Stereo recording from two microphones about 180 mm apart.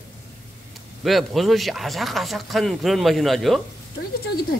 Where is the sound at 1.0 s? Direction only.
Centre (ahead or behind).